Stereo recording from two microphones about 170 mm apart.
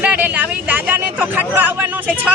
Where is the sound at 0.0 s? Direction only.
10° right (ahead or behind).